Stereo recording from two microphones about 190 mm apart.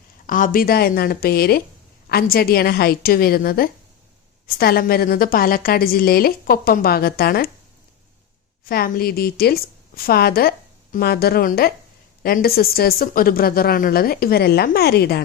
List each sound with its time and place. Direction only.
0.3 s a woman's voice: 45° left (ahead or behind)
8.6 s a woman's voice: 50° left (ahead or behind)